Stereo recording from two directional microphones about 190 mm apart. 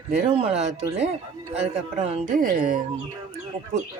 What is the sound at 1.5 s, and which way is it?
Speech, 35° right (ahead or behind).